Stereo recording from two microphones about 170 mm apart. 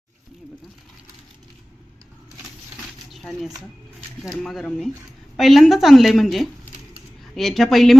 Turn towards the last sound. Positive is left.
turn(degrees=0)  # may be behind; listen again after turning